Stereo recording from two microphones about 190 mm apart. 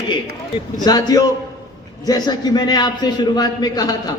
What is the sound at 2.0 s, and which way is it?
A man's voice, 20° left (ahead or behind).